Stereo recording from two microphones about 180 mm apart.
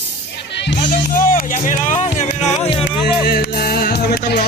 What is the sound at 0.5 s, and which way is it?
Music, 75° left (ahead or behind).